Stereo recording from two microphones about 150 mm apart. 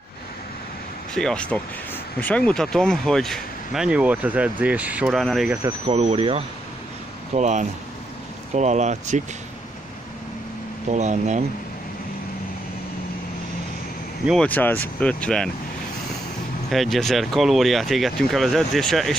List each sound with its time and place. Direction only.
1.1 s speech: 5° left (ahead or behind)
5.0 s speech: centre (ahead or behind)
5.5 s speech: 20° right (ahead or behind)
5.9 s speech: 45° right (ahead or behind)
7.3 s speech: 55° right (ahead or behind)
10.9 s speech: 50° right (ahead or behind)
14.2 s speech: 5° left (ahead or behind)
16.7 s speech: centre (ahead or behind)